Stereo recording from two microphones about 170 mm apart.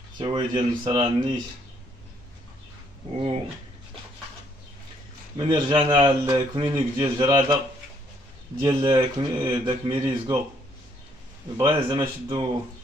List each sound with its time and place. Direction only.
0.2 s a man's voice: 25° right (ahead or behind)
5.4 s a man's voice: 25° right (ahead or behind)
11.5 s a man's voice: 25° right (ahead or behind)